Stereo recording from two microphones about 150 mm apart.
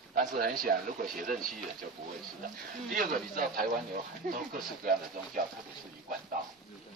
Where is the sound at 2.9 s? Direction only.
65° right (ahead or behind).